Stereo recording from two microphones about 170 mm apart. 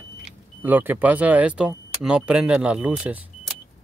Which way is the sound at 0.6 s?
10° right (ahead or behind).